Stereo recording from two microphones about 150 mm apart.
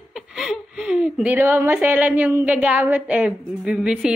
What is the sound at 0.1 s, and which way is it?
A woman's voice, 5° right (ahead or behind).